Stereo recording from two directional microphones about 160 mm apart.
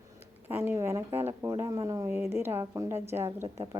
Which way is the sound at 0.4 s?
15° right (ahead or behind).